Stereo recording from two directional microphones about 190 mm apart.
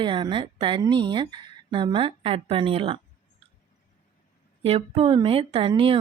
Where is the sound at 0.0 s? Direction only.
25° right (ahead or behind).